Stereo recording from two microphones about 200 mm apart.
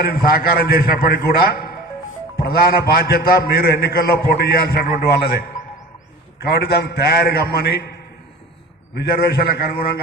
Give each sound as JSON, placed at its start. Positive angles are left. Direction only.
{"t": 0.1, "sound": "a man's voice", "side_deg": 50}
{"t": 6.5, "sound": "a man's voice", "side_deg": 50}
{"t": 9.0, "sound": "a man's voice", "side_deg": 50}